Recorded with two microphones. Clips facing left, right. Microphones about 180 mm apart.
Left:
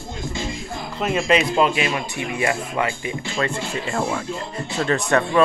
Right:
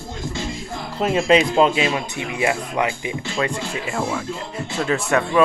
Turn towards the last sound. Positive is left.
turn(degrees=-5)  # may be behind; listen again after turning